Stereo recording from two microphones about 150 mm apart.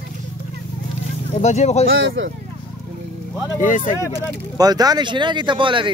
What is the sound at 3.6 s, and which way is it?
Speech, 60° left (ahead or behind).